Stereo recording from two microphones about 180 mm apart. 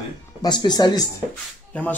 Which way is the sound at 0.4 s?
25° left (ahead or behind).